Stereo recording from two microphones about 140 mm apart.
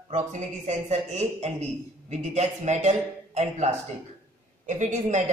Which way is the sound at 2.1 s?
50° right (ahead or behind).